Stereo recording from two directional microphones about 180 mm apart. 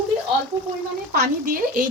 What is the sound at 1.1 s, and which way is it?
Speech, 50° right (ahead or behind).